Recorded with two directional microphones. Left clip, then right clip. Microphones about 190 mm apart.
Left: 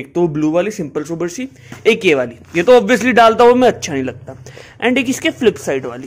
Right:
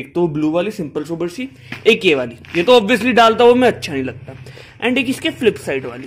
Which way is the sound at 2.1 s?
15° left (ahead or behind).